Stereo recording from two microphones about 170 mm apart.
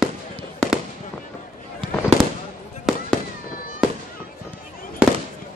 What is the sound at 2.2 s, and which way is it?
Fireworks, 25° left (ahead or behind).